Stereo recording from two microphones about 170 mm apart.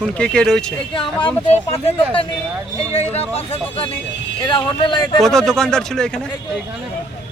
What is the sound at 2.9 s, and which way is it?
Speech, 40° left (ahead or behind).